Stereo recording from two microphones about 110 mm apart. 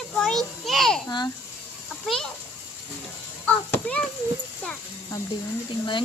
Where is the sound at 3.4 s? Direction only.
15° left (ahead or behind).